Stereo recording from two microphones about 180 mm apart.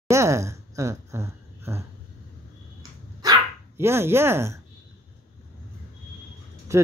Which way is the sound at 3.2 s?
15° right (ahead or behind).